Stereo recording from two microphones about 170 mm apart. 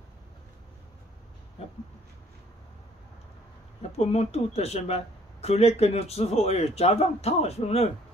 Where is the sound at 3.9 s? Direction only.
40° left (ahead or behind).